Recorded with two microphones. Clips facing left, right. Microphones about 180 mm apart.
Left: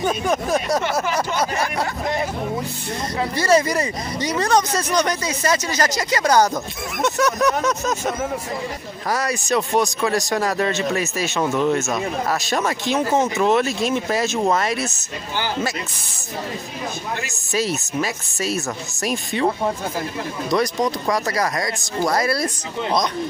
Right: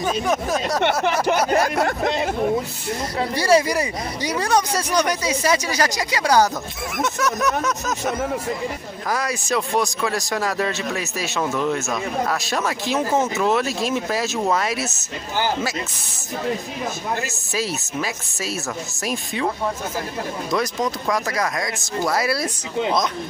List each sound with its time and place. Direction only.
0.3 s speech: centre (ahead or behind)
1.0 s speech: 65° right (ahead or behind)
1.5 s speech: 55° right (ahead or behind)
3.3 s speech: 10° right (ahead or behind)
9.1 s speech: centre (ahead or behind)
17.6 s speech: centre (ahead or behind)
20.5 s speech: centre (ahead or behind)